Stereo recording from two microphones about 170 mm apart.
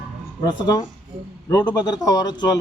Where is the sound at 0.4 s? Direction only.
25° left (ahead or behind).